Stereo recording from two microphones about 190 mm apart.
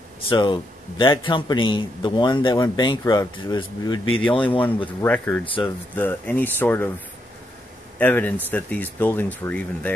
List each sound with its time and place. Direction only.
0.3 s a man's voice: 25° left (ahead or behind)
4.2 s speech: 5° left (ahead or behind)
5.4 s a man's voice: 25° left (ahead or behind)
5.9 s speech: 10° left (ahead or behind)
8.0 s speech: 10° left (ahead or behind)